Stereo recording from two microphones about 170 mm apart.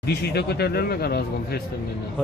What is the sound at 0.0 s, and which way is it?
Speech, 75° left (ahead or behind).